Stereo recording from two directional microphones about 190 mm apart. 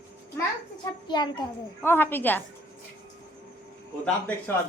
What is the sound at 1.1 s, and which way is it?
Speech, 25° left (ahead or behind).